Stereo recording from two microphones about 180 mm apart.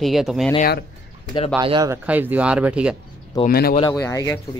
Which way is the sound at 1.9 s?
10° right (ahead or behind).